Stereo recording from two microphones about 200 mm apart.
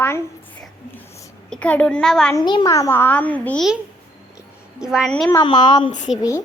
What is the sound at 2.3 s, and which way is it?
A child's voice, 20° left (ahead or behind).